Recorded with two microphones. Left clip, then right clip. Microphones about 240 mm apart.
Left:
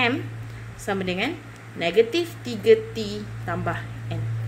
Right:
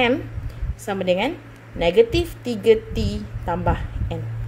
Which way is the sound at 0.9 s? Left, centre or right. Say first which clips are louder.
Right 5 dB; centre.